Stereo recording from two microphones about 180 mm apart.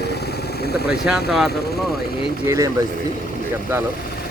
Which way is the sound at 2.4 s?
15° right (ahead or behind).